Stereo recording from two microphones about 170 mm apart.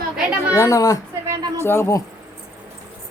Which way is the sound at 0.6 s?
20° left (ahead or behind).